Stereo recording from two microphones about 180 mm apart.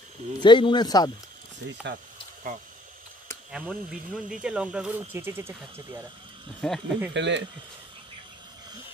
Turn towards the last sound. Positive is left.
turn(degrees=-80)